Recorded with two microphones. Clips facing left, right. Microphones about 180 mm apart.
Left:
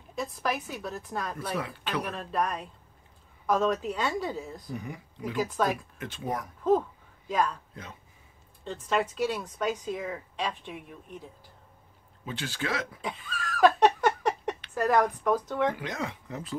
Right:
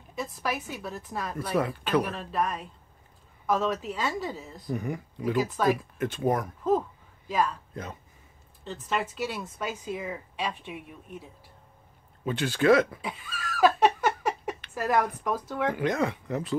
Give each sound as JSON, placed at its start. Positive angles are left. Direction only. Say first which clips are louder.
{"t": 0.1, "sound": "a woman's voice", "louder": "left 1 dB", "side_deg": -5}
{"t": 1.6, "sound": "speech", "louder": "right 7 dB", "side_deg": -45}
{"t": 2.1, "sound": "a woman's voice", "louder": "even", "side_deg": 0}
{"t": 4.7, "sound": "speech", "louder": "right 9 dB", "side_deg": -50}
{"t": 5.5, "sound": "a woman's voice", "louder": "right 1 dB", "side_deg": 0}
{"t": 5.9, "sound": "speech", "louder": "right 7 dB", "side_deg": -50}
{"t": 7.2, "sound": "a man's voice", "louder": "right 1 dB", "side_deg": 0}
{"t": 8.6, "sound": "a woman's voice", "louder": "left 2 dB", "side_deg": -5}
{"t": 12.3, "sound": "speech", "louder": "right 11 dB", "side_deg": -55}
{"t": 13.0, "sound": "laughter", "louder": "left 1 dB", "side_deg": -5}
{"t": 14.7, "sound": "speech", "louder": "left 2 dB", "side_deg": -5}
{"t": 15.8, "sound": "speech", "louder": "right 8 dB", "side_deg": -55}